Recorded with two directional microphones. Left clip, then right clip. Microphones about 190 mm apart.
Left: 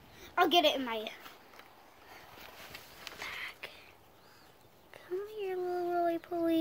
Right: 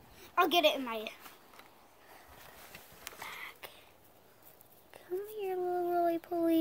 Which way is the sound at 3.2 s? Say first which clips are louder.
Left 4 dB; 20° right (ahead or behind).